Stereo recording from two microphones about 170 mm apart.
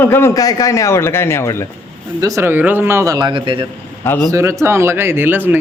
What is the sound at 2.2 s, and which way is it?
A man's voice, 20° right (ahead or behind).